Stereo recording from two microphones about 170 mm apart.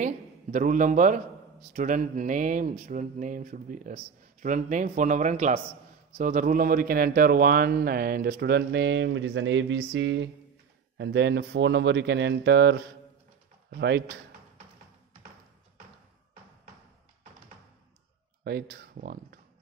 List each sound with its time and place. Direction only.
0.0 s a man's voice: 50° right (ahead or behind); by 12.8 s 90° right
13.7 s speech: 80° right
18.4 s speech: 65° right (ahead or behind)